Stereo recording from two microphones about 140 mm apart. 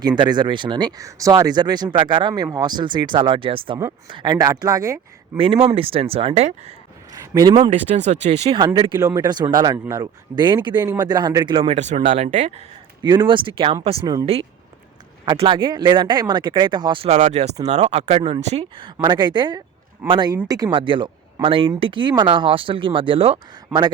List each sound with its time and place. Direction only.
0.2 s speech: 30° right (ahead or behind)
5.4 s speech: 40° right (ahead or behind)
7.1 s speech: 30° right (ahead or behind)
7.7 s speech: 60° right (ahead or behind)
8.5 s speech: 30° right (ahead or behind)
11.5 s speech: 40° right (ahead or behind)
11.8 s speech: 55° right (ahead or behind)
13.0 s speech: 30° right (ahead or behind)
15.2 s speech: 35° right (ahead or behind)
17.1 s speech: 55° right (ahead or behind)
19.0 s speech: 35° right (ahead or behind)